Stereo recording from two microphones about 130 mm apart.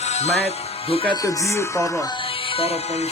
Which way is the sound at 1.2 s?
25° left (ahead or behind).